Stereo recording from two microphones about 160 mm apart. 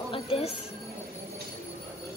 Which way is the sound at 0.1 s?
35° left (ahead or behind).